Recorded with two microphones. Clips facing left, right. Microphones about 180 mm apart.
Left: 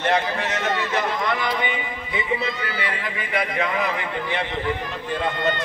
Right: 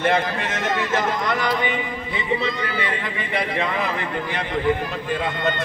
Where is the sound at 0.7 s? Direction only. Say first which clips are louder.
Right 2 dB; 45° right (ahead or behind).